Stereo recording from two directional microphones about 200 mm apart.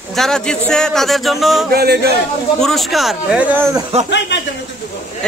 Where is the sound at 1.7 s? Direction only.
50° right (ahead or behind).